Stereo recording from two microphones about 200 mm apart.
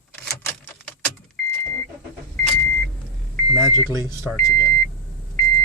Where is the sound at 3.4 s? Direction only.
15° right (ahead or behind).